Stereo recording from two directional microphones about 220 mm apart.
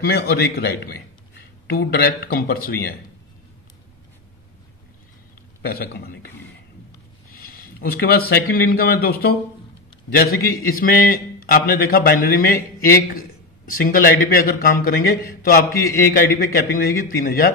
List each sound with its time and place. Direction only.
0.0 s a man's voice: 45° left (ahead or behind)
5.6 s a man's voice: 45° left (ahead or behind)
7.2 s a man's voice: 40° left (ahead or behind)
13.7 s a man's voice: 40° left (ahead or behind)